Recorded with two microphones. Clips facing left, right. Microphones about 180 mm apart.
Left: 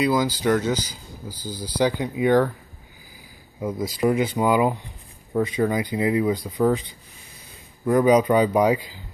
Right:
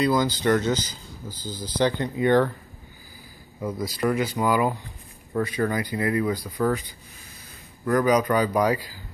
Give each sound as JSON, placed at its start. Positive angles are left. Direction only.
{"t": 0.0, "sound": "speech", "side_deg": 10}
{"t": 3.6, "sound": "a man's voice", "side_deg": 20}